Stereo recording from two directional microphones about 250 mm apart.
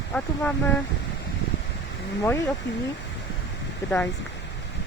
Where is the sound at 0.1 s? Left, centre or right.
Centre.